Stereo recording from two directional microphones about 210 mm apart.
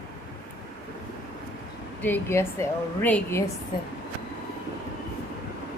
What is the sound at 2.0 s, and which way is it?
Speech, 10° left (ahead or behind).